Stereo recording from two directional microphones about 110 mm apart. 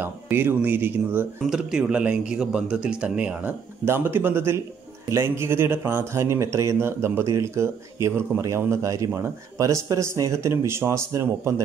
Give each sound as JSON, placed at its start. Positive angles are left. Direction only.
{"t": 0.0, "sound": "speech", "side_deg": -20}
{"t": 1.5, "sound": "a man's voice", "side_deg": -5}